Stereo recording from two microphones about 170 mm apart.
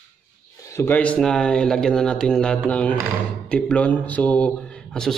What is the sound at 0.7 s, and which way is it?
A man's voice, 10° left (ahead or behind).